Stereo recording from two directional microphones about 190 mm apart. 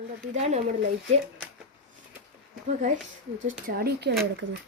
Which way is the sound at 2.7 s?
40° right (ahead or behind).